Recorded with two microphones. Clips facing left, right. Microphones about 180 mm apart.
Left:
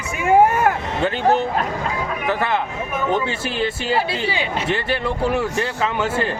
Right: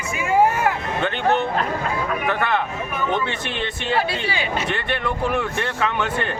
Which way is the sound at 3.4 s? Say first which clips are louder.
Left 4 dB; 5° left (ahead or behind).